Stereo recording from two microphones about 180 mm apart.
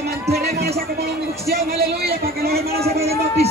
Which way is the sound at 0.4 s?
60° right (ahead or behind).